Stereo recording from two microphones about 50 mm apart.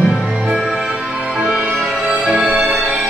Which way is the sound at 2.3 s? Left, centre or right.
Right.